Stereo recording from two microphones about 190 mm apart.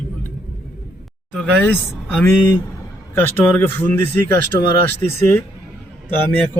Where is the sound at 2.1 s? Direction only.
10° left (ahead or behind).